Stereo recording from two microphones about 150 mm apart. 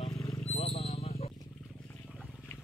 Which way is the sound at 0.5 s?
40° left (ahead or behind).